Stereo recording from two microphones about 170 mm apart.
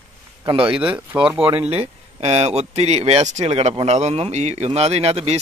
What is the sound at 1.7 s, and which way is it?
Speech, 35° right (ahead or behind).